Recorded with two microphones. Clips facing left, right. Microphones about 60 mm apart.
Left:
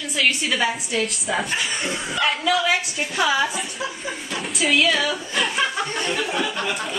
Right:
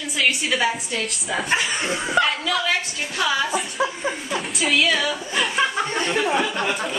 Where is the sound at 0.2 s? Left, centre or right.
Centre.